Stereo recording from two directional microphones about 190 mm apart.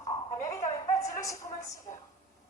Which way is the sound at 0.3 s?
15° left (ahead or behind).